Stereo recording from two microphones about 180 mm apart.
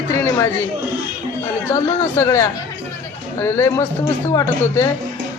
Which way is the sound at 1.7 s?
15° left (ahead or behind).